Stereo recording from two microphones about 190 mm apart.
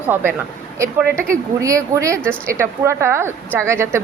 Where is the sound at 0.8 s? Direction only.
10° right (ahead or behind).